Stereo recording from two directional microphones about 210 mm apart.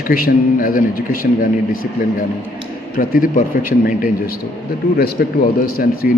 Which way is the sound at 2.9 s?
45° left (ahead or behind).